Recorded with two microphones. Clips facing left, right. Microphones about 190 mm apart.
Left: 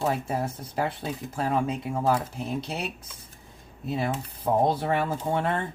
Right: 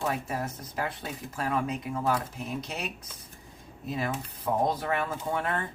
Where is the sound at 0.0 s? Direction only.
30° left (ahead or behind).